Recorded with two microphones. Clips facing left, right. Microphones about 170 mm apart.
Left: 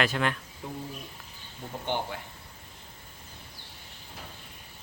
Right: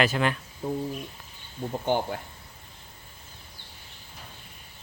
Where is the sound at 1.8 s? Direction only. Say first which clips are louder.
Right 5 dB; 45° right (ahead or behind).